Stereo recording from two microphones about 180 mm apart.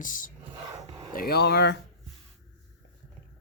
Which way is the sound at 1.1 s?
55° left (ahead or behind).